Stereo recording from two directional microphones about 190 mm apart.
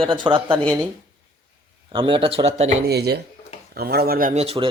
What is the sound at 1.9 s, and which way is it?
Speech, 25° right (ahead or behind).